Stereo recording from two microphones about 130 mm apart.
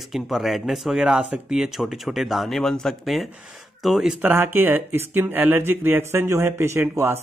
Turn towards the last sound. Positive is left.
turn(degrees=-20)  # may be behind; listen again after turning